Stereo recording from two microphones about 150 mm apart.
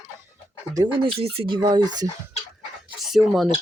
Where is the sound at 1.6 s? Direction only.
25° right (ahead or behind).